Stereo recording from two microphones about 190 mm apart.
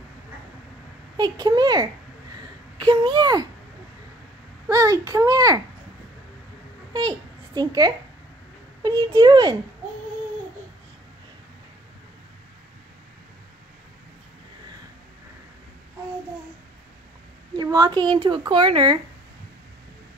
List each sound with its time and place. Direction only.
1.1 s a child's voice: 20° right (ahead or behind)
4.6 s a child's voice: 15° right (ahead or behind)
6.9 s a child's voice: 20° right (ahead or behind)
17.6 s a child's voice: 20° right (ahead or behind)